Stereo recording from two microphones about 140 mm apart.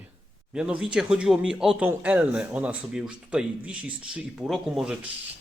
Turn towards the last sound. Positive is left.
turn(degrees=-5)  # may be behind; listen again after turning